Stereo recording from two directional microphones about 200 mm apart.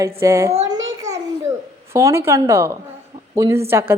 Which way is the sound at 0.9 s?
15° right (ahead or behind).